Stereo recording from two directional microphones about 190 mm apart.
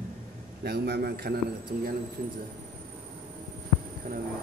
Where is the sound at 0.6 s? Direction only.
55° right (ahead or behind).